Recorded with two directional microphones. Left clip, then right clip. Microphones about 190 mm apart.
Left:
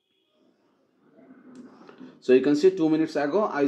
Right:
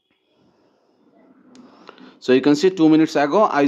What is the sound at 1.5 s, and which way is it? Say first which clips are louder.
Speech: right 5 dB; 35° right (ahead or behind).